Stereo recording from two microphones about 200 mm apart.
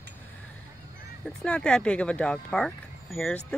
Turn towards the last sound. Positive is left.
turn(degrees=0)  # may be behind; listen again after turning